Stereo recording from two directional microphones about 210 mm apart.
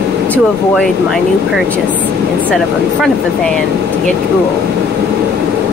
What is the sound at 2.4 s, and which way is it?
Speech, centre (ahead or behind).